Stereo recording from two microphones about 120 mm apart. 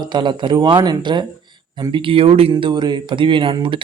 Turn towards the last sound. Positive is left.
turn(degrees=-45)  # may be behind; listen again after turning